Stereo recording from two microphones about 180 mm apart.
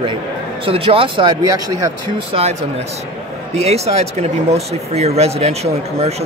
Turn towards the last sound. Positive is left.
turn(degrees=-35)  # may be behind; listen again after turning